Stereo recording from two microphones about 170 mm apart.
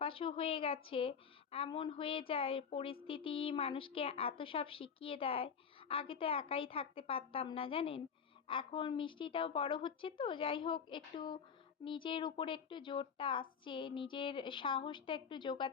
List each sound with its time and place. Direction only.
0.0 s a woman's voice: 30° left (ahead or behind)